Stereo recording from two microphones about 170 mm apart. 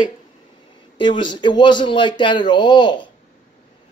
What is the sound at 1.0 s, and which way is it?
Speech, 30° left (ahead or behind).